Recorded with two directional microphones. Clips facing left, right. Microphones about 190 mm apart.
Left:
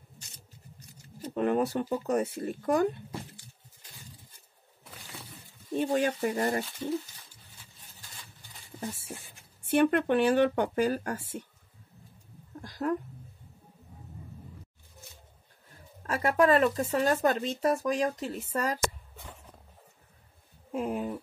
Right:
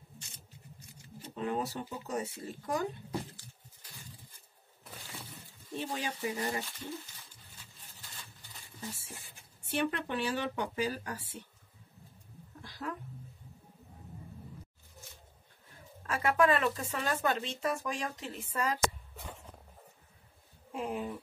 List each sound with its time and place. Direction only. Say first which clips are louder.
1.3 s speech: left 8 dB; 60° left (ahead or behind)
5.8 s speech: left 10 dB; 50° left (ahead or behind)
9.7 s speech: left 9 dB; 55° left (ahead or behind)
12.6 s a sound: left 9 dB; 45° left (ahead or behind)
16.1 s speech: left 4 dB; 40° left (ahead or behind)
20.7 s speech: left 5 dB; 45° left (ahead or behind)